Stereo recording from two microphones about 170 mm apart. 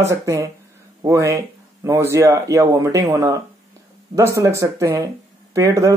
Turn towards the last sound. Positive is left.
turn(degrees=-20)  # may be behind; listen again after turning